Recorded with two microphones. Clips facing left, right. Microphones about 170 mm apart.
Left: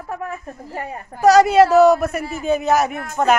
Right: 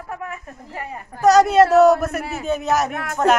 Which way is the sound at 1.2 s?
Centre (ahead or behind).